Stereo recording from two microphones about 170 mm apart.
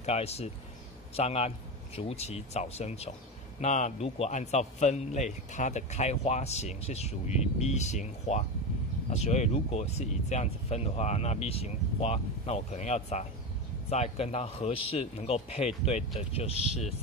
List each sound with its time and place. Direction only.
0.0 s a man's voice: 40° left (ahead or behind)